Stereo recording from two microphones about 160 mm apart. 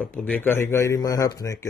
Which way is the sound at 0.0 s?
10° left (ahead or behind).